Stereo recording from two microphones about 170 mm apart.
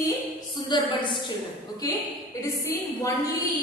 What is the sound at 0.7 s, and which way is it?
Speech, 25° left (ahead or behind).